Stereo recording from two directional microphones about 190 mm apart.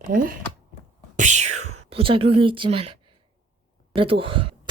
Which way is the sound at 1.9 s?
30° right (ahead or behind).